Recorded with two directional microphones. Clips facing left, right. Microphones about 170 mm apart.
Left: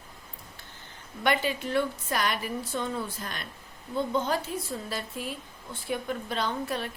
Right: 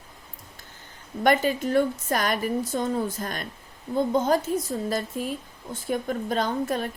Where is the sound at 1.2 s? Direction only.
45° right (ahead or behind).